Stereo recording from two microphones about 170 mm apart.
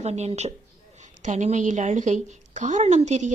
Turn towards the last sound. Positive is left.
turn(degrees=-45)  # may be behind; listen again after turning